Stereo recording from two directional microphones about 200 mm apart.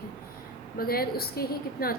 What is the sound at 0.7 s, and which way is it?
A woman's voice, 50° left (ahead or behind).